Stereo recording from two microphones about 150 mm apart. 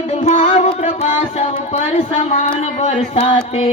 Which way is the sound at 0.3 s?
55° left (ahead or behind).